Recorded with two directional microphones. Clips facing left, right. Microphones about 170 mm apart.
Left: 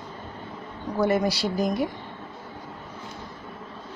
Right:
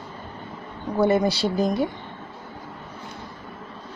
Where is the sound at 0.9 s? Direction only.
25° right (ahead or behind).